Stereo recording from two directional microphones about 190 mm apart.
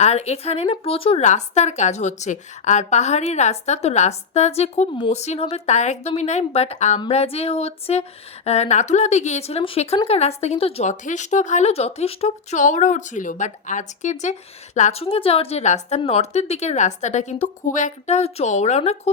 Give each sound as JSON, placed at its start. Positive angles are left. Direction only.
{"t": 0.0, "sound": "speech", "side_deg": 35}